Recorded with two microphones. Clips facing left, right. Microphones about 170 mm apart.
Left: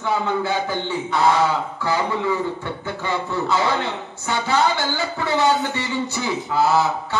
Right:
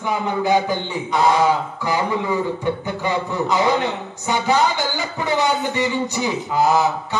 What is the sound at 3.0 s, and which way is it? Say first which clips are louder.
A man's voice: right 2 dB; 15° right (ahead or behind).